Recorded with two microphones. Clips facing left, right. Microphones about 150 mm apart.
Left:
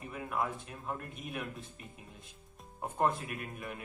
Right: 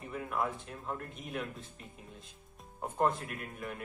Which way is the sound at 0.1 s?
15° left (ahead or behind).